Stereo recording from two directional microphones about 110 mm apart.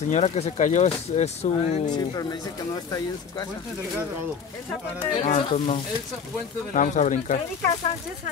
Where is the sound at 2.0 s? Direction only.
35° left (ahead or behind).